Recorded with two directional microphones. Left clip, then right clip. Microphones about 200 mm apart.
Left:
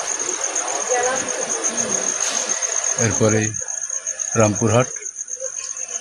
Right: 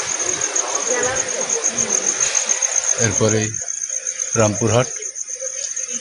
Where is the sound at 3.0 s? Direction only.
15° left (ahead or behind).